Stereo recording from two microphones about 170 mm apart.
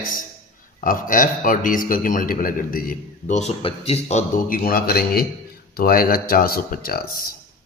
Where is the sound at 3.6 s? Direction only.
35° left (ahead or behind).